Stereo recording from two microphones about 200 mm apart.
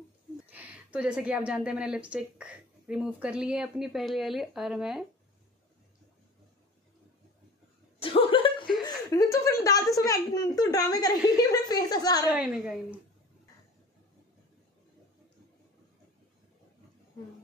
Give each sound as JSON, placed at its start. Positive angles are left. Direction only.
{"t": 0.5, "sound": "a woman's voice", "side_deg": -5}
{"t": 8.0, "sound": "a sound", "side_deg": 25}
{"t": 8.8, "sound": "chuckle", "side_deg": 15}
{"t": 9.9, "sound": "a woman's voice", "side_deg": 15}
{"t": 12.3, "sound": "a woman's voice", "side_deg": -5}